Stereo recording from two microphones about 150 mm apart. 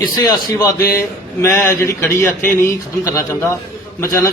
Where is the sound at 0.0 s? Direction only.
25° left (ahead or behind).